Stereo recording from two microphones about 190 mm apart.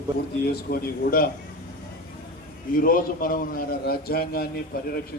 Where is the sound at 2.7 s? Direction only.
45° left (ahead or behind).